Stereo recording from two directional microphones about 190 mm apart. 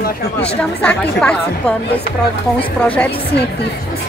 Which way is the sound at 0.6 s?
5° left (ahead or behind).